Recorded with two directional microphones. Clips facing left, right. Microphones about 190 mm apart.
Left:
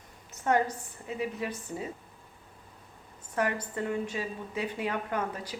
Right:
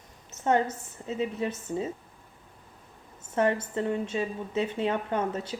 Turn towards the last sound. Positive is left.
turn(degrees=-25)  # may be behind; listen again after turning